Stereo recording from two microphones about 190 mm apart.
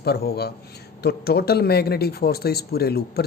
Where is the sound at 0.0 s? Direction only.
55° left (ahead or behind).